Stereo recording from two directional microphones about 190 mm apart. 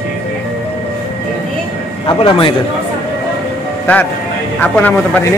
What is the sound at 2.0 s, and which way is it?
Speech, 25° left (ahead or behind).